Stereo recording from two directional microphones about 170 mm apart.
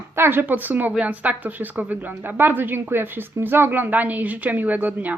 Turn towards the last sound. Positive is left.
turn(degrees=-10)  # may be behind; listen again after turning